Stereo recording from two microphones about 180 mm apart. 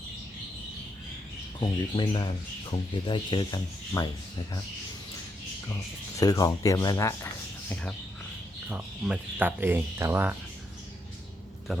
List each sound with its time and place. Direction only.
1.5 s speech: 25° left (ahead or behind)
6.1 s speech: 20° left (ahead or behind)
8.7 s speech: 10° right (ahead or behind)